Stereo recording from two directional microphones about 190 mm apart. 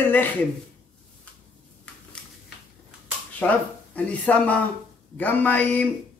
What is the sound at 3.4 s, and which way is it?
Speech, 5° left (ahead or behind).